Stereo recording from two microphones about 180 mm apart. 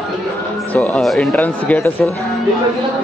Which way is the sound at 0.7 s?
5° left (ahead or behind).